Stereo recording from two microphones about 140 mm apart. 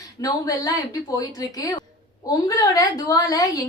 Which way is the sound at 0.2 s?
25° left (ahead or behind).